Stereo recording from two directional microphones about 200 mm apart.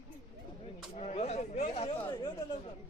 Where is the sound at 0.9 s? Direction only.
35° left (ahead or behind).